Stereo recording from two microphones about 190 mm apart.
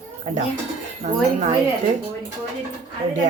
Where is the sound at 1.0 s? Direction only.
40° right (ahead or behind).